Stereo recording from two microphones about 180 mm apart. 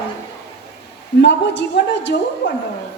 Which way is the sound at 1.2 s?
75° left (ahead or behind).